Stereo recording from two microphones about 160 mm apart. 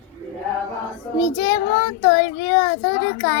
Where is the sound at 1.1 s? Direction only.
25° left (ahead or behind).